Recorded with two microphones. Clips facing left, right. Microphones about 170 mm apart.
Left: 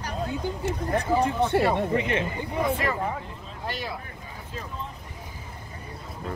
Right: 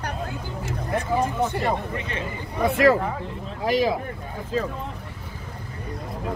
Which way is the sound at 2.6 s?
85° right.